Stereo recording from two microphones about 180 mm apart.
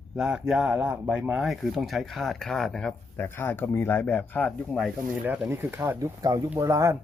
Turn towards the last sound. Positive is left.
turn(degrees=-15)  # may be behind; listen again after turning